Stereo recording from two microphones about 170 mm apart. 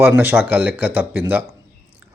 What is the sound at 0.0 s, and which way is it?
Speech, 10° right (ahead or behind).